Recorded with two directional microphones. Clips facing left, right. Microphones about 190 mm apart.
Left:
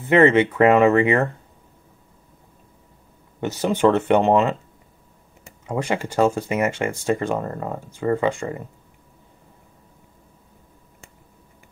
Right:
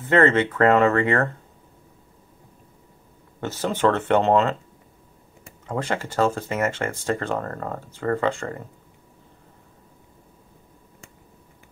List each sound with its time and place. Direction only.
0.1 s speech: 15° left (ahead or behind)
3.3 s speech: 15° left (ahead or behind)
5.7 s speech: 15° left (ahead or behind)